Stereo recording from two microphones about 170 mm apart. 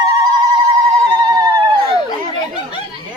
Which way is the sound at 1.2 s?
25° right (ahead or behind).